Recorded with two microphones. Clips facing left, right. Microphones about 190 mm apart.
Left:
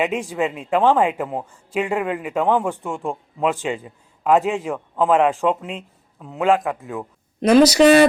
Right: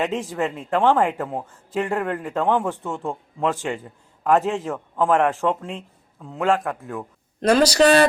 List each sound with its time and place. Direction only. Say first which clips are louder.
0.0 s a man's voice: left 2 dB; 15° left (ahead or behind)